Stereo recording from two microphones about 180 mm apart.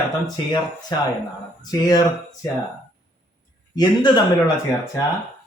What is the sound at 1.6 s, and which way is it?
Speech, 20° left (ahead or behind).